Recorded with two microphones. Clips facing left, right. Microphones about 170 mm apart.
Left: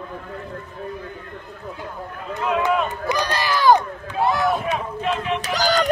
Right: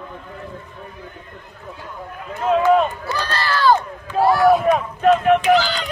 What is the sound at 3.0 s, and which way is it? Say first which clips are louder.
Run: left 1 dB; 15° left (ahead or behind).